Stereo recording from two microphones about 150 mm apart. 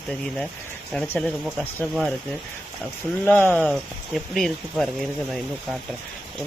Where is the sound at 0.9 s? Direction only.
10° left (ahead or behind).